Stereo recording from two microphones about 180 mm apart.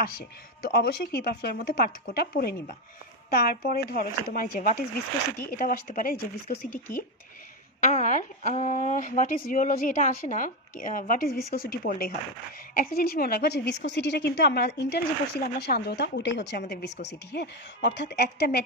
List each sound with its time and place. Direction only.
0.7 s a woman's voice: 60° left (ahead or behind)
7.8 s a woman's voice: 45° left (ahead or behind); by 18.6 s 65° left (ahead or behind)